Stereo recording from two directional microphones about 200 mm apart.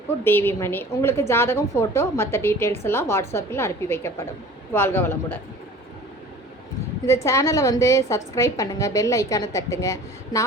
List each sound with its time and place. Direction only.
0.3 s a woman's voice: 10° left (ahead or behind)
7.1 s a woman's voice: 15° left (ahead or behind)